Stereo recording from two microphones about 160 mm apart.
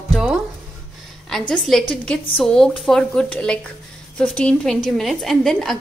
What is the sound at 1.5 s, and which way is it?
A woman's voice, 5° left (ahead or behind).